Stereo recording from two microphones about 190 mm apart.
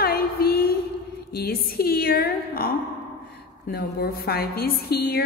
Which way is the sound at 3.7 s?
55° left (ahead or behind).